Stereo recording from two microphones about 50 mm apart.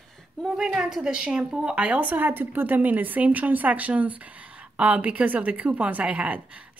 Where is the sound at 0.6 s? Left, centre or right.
Centre.